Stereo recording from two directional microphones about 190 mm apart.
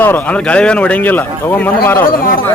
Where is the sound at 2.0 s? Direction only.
50° left (ahead or behind).